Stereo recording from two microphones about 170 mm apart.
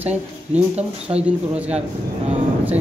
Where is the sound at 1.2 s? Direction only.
5° right (ahead or behind).